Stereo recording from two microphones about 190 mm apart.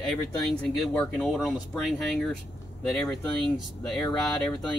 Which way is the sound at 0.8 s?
Centre (ahead or behind).